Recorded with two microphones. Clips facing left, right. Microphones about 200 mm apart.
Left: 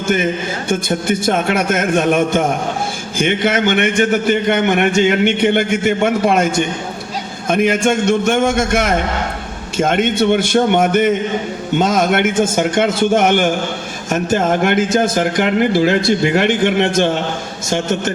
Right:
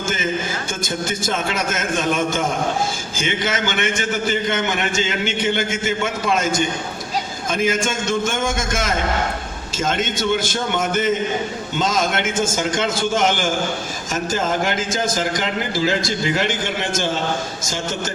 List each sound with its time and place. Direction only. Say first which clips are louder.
0.7 s a man's voice: left 11 dB; 60° left (ahead or behind)